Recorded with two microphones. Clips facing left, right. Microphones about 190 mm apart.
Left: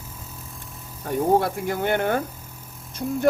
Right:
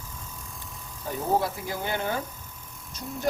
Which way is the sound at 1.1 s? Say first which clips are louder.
Left 6 dB; 60° left (ahead or behind).